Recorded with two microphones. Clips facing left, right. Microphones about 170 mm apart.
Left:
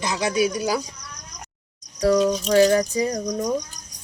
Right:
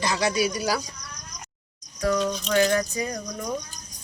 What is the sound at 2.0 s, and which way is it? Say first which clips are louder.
Speech: left 6 dB; 35° left (ahead or behind).